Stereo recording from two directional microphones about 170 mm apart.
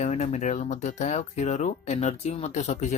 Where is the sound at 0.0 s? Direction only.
40° left (ahead or behind).